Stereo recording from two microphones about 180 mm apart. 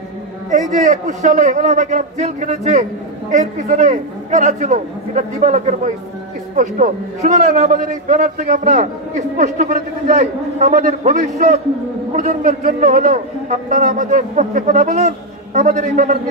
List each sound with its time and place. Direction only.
0.5 s a man's voice: 45° right (ahead or behind)